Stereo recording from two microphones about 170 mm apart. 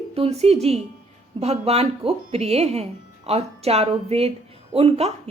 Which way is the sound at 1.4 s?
40° right (ahead or behind).